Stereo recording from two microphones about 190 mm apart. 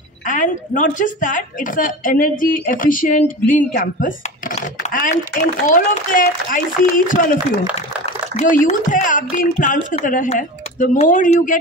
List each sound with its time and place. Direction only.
0.3 s speech: 40° left (ahead or behind)
7.7 s speech: 35° left (ahead or behind)